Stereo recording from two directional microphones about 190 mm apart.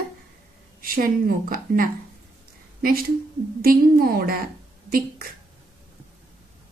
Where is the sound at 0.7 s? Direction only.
50° right (ahead or behind).